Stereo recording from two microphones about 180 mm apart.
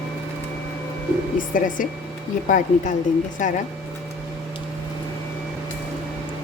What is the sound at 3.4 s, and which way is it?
Speech, 45° left (ahead or behind).